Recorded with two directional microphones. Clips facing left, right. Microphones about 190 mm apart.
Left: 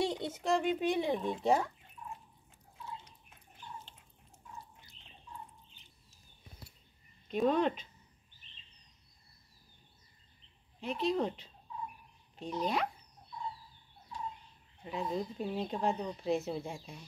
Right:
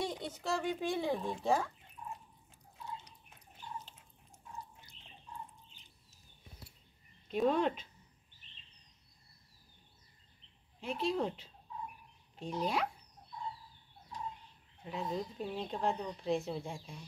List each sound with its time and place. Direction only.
0.0 s speech: 20° left (ahead or behind)
7.2 s speech: 5° right (ahead or behind)
10.8 s speech: 5° right (ahead or behind)
14.8 s speech: centre (ahead or behind)